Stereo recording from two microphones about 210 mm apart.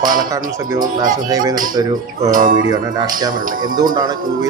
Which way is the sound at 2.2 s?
40° right (ahead or behind).